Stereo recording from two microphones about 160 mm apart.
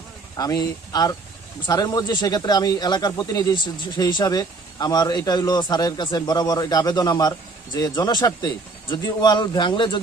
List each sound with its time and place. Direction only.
0.3 s speech: 20° left (ahead or behind)